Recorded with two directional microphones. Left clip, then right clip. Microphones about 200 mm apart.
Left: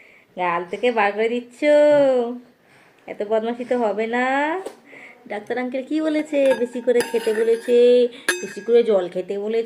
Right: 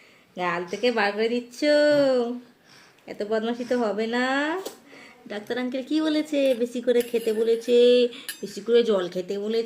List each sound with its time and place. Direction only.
0.3 s dishes: 20° right (ahead or behind)